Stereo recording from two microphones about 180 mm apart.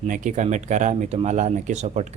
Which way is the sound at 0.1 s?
45° right (ahead or behind).